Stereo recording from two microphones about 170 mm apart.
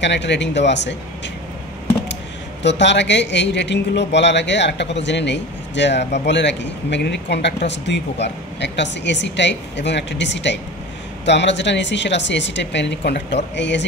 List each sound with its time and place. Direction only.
0.0 s speech: 90° left
2.6 s speech: 90° left